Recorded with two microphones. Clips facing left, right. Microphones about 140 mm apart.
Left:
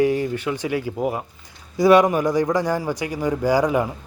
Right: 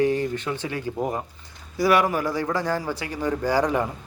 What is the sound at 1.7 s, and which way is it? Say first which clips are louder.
A man's voice: left 6 dB; 20° left (ahead or behind).